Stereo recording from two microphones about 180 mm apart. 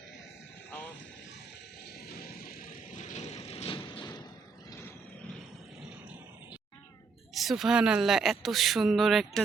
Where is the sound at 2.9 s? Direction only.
40° left (ahead or behind); by 4.2 s 25° left (ahead or behind).